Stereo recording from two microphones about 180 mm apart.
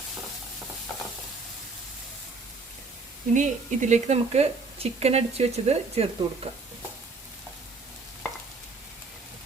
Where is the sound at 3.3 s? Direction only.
45° right (ahead or behind).